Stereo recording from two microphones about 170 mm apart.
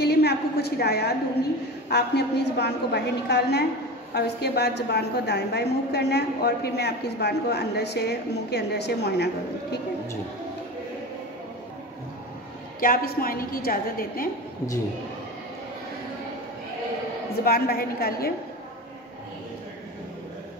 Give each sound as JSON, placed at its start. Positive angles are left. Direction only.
{"t": 0.0, "sound": "a sound", "side_deg": 70}
{"t": 1.9, "sound": "a woman's voice", "side_deg": 75}
{"t": 12.8, "sound": "a woman's voice", "side_deg": 60}
{"t": 17.5, "sound": "a woman's voice", "side_deg": 65}